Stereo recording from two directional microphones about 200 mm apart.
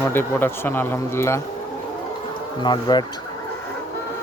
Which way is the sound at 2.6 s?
20° left (ahead or behind).